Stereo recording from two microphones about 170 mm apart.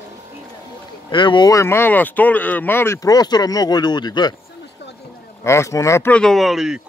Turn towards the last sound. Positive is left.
turn(degrees=0)  # may be behind; listen again after turning